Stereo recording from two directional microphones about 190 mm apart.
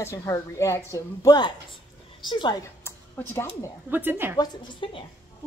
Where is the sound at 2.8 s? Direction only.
10° left (ahead or behind).